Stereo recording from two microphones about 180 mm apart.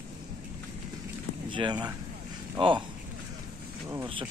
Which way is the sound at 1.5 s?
25° right (ahead or behind).